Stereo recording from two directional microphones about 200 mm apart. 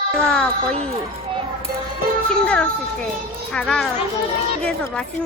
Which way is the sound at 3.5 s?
5° left (ahead or behind).